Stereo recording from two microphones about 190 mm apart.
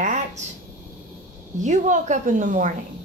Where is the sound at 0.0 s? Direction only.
40° right (ahead or behind).